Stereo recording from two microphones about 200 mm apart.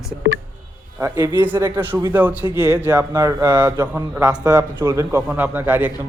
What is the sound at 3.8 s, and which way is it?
A man's voice, 10° right (ahead or behind).